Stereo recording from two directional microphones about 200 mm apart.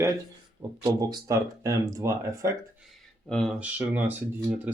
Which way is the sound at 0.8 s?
15° right (ahead or behind).